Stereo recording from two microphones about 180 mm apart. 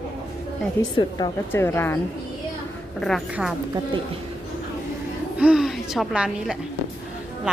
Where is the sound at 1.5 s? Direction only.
15° left (ahead or behind).